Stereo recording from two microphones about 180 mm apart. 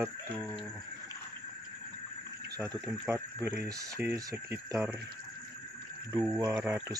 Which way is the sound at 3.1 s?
15° right (ahead or behind).